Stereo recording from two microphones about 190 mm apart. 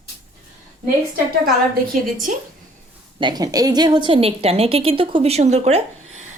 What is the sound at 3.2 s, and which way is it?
A woman's voice, 20° right (ahead or behind).